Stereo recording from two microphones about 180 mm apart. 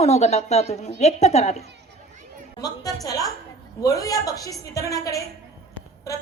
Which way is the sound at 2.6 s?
20° left (ahead or behind).